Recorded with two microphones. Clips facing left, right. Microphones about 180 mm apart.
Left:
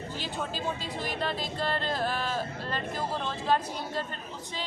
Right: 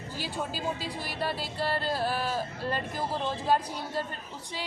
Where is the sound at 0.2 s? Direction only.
10° right (ahead or behind).